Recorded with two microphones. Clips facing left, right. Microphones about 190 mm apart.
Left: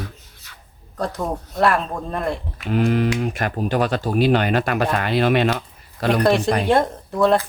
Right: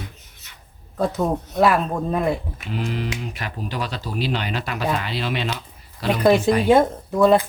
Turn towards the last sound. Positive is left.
turn(degrees=0)  # may be behind; listen again after turning